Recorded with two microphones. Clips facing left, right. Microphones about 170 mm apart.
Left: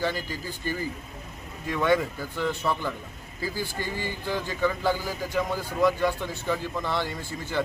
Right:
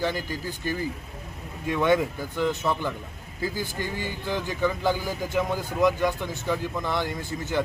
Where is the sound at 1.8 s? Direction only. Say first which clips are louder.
Right 1 dB; 15° right (ahead or behind).